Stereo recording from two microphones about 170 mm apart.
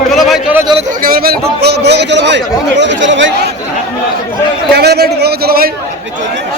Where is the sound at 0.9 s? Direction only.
55° right (ahead or behind); by 3.5 s 85° right.